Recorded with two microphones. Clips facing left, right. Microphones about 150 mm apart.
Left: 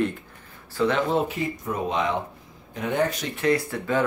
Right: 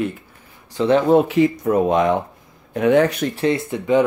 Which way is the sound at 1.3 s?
80° right.